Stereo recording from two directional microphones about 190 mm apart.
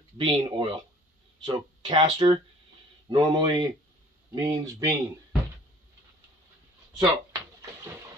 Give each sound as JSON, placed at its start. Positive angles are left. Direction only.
{"t": 0.2, "sound": "speech", "side_deg": -30}
{"t": 7.0, "sound": "drawer open or close", "side_deg": -20}